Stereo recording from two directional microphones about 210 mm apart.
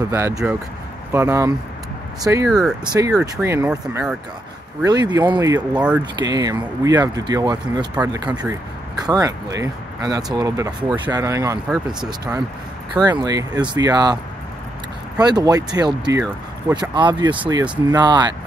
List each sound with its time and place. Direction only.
0.1 s speech: 10° right (ahead or behind)
3.1 s speech: 5° right (ahead or behind)
4.8 s speech: 20° right (ahead or behind)
5.7 s speech: 5° right (ahead or behind)
6.1 s speech: 20° right (ahead or behind)
8.0 s speech: 5° right (ahead or behind)
9.0 s speech: 15° right (ahead or behind)
11.7 s speech: 5° right (ahead or behind)
12.9 s speech: 20° right (ahead or behind)
15.1 s speech: 20° right (ahead or behind)